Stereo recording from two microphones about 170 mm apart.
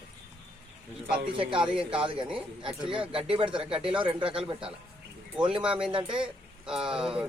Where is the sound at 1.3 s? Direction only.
30° right (ahead or behind).